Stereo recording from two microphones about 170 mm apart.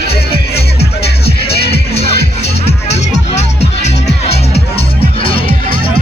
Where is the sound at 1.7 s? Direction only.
35° left (ahead or behind).